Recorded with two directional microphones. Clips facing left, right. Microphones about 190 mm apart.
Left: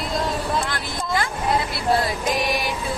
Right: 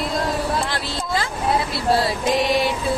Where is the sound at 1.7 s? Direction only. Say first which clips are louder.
Right 2 dB; 30° right (ahead or behind).